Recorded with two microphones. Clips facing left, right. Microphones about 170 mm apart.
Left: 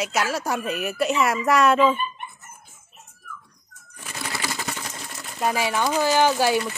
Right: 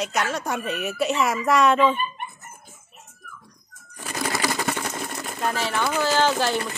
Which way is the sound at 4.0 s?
40° right (ahead or behind).